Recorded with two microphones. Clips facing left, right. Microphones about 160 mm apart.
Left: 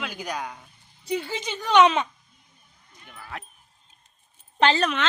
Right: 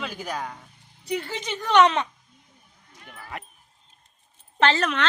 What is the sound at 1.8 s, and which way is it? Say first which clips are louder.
Speech: left 1 dB; 20° left (ahead or behind).